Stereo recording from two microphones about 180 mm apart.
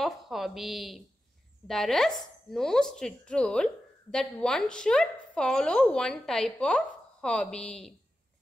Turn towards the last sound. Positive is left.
turn(degrees=5)  # may be behind; listen again after turning